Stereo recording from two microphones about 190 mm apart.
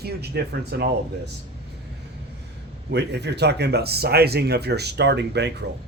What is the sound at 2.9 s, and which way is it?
Speech, 60° right (ahead or behind).